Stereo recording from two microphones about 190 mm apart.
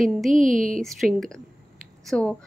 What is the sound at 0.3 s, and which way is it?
Speech, 45° right (ahead or behind).